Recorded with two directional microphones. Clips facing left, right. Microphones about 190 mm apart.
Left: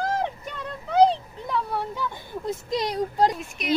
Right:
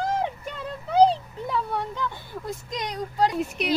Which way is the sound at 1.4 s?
Centre (ahead or behind).